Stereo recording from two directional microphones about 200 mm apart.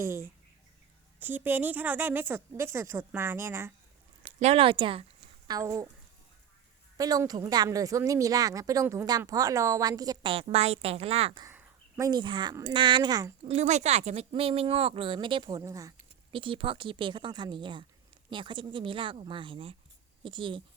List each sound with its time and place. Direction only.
0.0 s speech: 10° right (ahead or behind)
4.4 s speech: 30° right (ahead or behind)
6.9 s speech: 20° right (ahead or behind)
11.4 s speech: 10° right (ahead or behind)
13.5 s speech: 35° right (ahead or behind)